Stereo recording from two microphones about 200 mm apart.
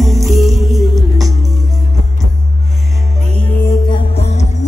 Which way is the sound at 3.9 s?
30° left (ahead or behind).